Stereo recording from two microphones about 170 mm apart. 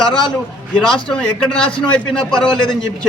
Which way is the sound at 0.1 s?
30° left (ahead or behind).